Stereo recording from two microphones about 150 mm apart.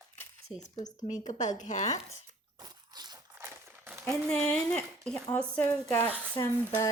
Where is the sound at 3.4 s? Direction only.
15° right (ahead or behind).